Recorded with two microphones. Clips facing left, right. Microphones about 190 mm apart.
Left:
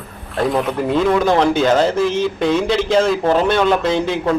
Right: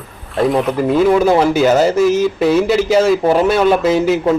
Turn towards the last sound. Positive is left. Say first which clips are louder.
# right 4 dB
turn(degrees=-5)  # may be behind; listen again after turning